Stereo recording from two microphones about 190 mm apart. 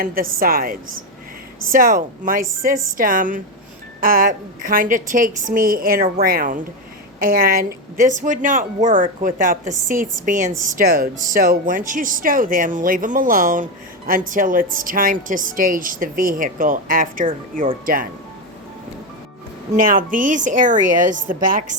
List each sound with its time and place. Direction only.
0.0 s a woman's voice: 50° right (ahead or behind)
19.7 s a woman's voice: 45° right (ahead or behind)